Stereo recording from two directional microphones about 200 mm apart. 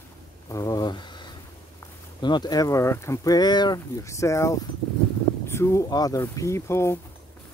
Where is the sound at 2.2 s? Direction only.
20° left (ahead or behind).